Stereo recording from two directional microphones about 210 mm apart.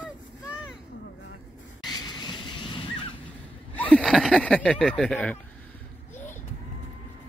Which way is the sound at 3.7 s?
5° left (ahead or behind).